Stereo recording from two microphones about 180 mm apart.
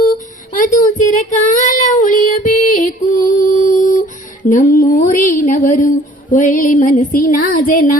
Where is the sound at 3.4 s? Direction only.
45° left (ahead or behind).